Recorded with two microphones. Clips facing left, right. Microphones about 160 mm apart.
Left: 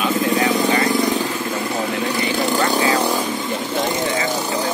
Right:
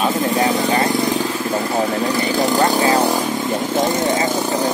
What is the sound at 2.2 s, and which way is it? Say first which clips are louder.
Speech: right 3 dB; 40° right (ahead or behind).